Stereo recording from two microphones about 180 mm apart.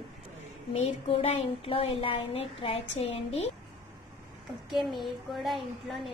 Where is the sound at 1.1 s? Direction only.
35° left (ahead or behind).